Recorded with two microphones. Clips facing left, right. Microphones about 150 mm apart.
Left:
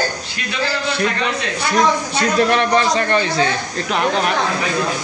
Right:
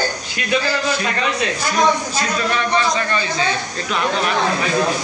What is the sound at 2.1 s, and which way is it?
A woman's voice, 65° left (ahead or behind).